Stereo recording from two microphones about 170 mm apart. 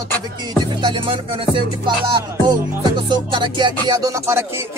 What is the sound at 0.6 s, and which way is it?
Music, 30° right (ahead or behind).